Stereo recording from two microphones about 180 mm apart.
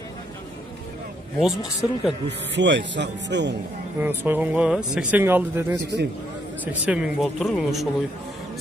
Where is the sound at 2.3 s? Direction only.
75° right (ahead or behind).